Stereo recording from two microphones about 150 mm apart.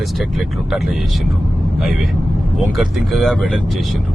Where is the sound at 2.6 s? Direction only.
Centre (ahead or behind).